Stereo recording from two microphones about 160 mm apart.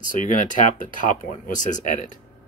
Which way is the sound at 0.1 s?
55° left (ahead or behind).